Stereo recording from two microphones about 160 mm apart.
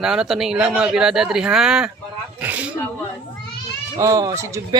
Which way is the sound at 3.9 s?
20° right (ahead or behind).